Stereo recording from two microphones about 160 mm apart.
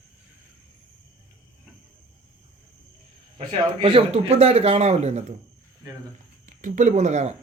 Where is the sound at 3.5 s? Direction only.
35° right (ahead or behind).